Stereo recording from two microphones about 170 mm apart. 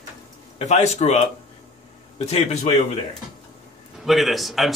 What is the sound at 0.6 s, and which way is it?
A man's voice, 40° left (ahead or behind).